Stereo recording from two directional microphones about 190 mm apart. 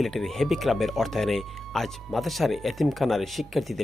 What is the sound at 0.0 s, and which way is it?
Speech, centre (ahead or behind).